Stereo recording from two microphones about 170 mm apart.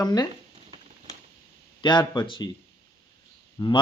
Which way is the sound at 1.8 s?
25° left (ahead or behind).